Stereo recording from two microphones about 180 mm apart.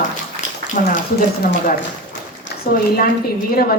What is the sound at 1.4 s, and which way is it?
Speech, 60° left (ahead or behind).